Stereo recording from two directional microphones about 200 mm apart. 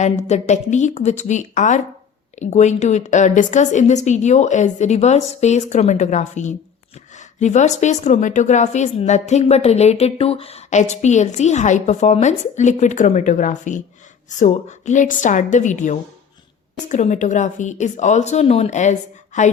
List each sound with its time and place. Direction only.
0.0 s a woman's voice: 35° left (ahead or behind)